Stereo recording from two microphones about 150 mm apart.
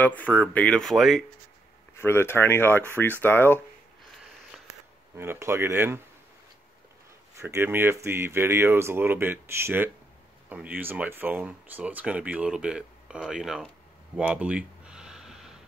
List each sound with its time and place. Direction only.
0.0 s speech: 10° left (ahead or behind)
2.0 s speech: 15° left (ahead or behind)
5.1 s speech: 15° right (ahead or behind)
7.3 s speech: 15° right (ahead or behind)
14.1 s a sound: 5° right (ahead or behind)